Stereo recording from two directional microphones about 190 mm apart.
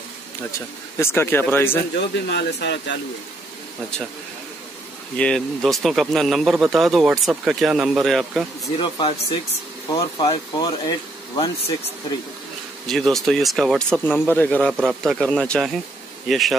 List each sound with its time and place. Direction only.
0.5 s speech: 15° left (ahead or behind)
2.2 s speech: 60° left (ahead or behind)
5.1 s speech: 5° left (ahead or behind)
8.7 s speech: 25° left (ahead or behind)
12.8 s speech: centre (ahead or behind)